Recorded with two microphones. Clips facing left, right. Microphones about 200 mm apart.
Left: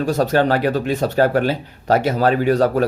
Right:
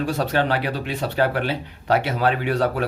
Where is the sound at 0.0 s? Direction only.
45° left (ahead or behind).